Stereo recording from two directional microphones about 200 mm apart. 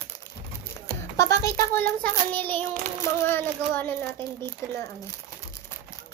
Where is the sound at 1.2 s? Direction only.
15° left (ahead or behind).